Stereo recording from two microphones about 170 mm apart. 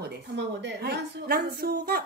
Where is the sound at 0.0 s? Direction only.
90° right.